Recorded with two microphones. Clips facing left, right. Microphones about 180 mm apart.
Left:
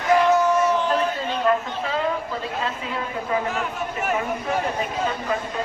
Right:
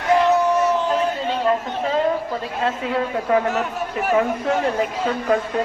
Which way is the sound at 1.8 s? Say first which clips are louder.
Right 5 dB; 40° right (ahead or behind).